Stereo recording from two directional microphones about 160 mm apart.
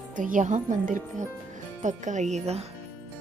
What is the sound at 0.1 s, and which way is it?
Speech, 55° right (ahead or behind).